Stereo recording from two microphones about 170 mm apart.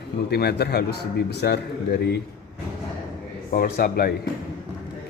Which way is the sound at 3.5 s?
60° left (ahead or behind).